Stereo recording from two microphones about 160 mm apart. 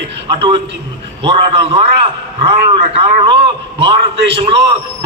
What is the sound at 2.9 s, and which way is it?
Speech, 35° right (ahead or behind).